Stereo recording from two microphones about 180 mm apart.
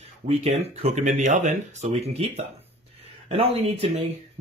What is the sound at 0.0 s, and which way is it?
Speech, 35° right (ahead or behind).